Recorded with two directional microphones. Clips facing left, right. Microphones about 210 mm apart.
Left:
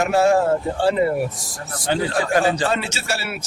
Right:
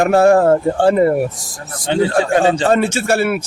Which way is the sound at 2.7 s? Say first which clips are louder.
Right 10 dB; 50° right (ahead or behind).